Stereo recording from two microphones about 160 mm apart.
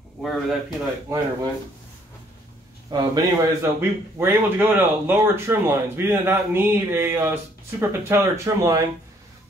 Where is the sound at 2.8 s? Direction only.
25° right (ahead or behind).